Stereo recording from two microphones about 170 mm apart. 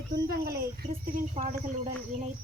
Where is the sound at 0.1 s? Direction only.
65° right (ahead or behind).